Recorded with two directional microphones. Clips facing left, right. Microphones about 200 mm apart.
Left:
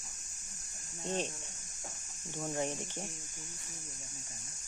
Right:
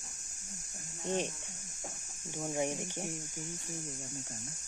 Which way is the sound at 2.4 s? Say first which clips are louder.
Right 2 dB; 10° right (ahead or behind).